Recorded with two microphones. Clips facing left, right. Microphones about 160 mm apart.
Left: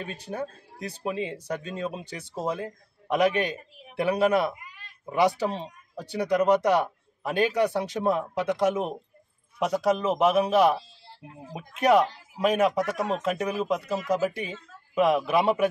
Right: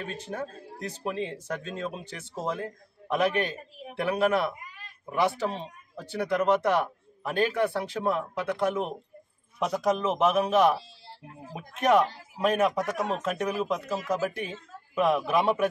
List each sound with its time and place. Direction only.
0.0 s speech: 10° left (ahead or behind)
11.8 s a man's voice: 10° left (ahead or behind)